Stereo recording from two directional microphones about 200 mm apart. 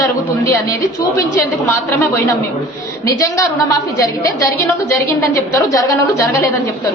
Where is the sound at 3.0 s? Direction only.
15° left (ahead or behind).